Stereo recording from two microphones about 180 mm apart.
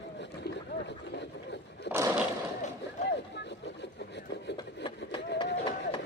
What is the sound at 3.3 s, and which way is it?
Vehicle, 70° left (ahead or behind).